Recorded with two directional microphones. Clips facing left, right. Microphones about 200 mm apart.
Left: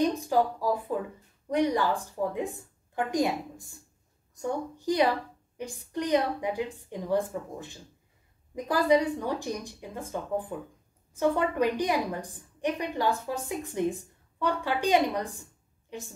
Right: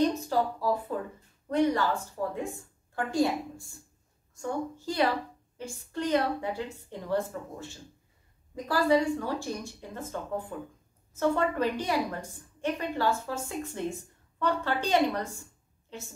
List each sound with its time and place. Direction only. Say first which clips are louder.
0.0 s a woman's voice: left 1 dB; 15° left (ahead or behind)